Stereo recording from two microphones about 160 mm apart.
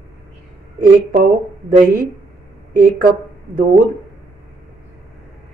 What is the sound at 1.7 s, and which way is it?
Speech, 55° right (ahead or behind).